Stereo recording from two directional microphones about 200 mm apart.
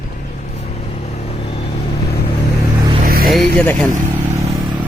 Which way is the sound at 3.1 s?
50° right (ahead or behind).